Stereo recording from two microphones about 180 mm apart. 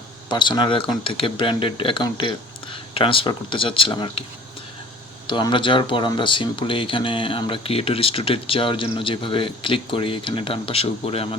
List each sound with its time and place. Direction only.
0.3 s speech: 25° left (ahead or behind)
5.3 s speech: 25° left (ahead or behind)